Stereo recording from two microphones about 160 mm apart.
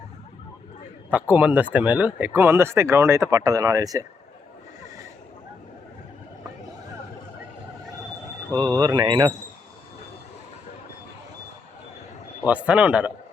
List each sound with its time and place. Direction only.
1.1 s speech: 10° right (ahead or behind)
8.5 s speech: 25° right (ahead or behind)
12.5 s speech: 10° right (ahead or behind)